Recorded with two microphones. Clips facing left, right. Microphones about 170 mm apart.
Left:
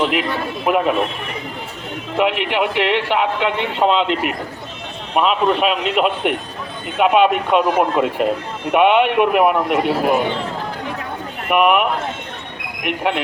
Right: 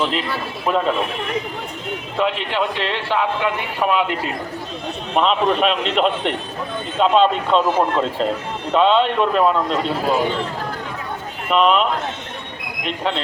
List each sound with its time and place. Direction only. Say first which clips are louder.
0.1 s a man's voice: left 3 dB; 15° left (ahead or behind)
2.1 s a man's voice: left 3 dB; 15° left (ahead or behind)
5.1 s a man's voice: left 1 dB; 5° left (ahead or behind)
11.4 s a man's voice: left 1 dB; 15° left (ahead or behind)